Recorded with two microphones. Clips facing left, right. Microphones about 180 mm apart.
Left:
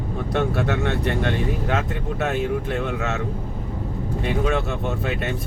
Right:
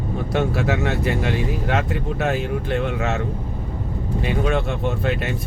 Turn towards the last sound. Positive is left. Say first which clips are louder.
# right 2 dB
turn(degrees=0)  # may be behind; listen again after turning